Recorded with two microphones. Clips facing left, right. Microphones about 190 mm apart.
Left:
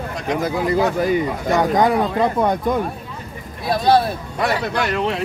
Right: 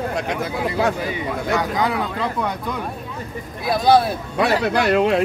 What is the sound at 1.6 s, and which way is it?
Speech, 45° left (ahead or behind).